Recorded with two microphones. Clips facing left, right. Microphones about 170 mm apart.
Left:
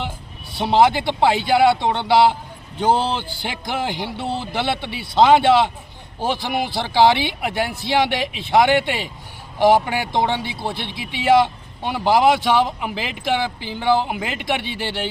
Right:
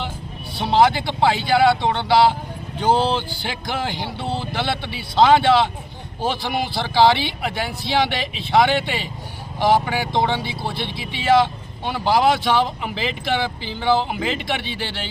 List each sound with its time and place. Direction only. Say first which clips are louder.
0.6 s speech: left 1 dB; 15° left (ahead or behind)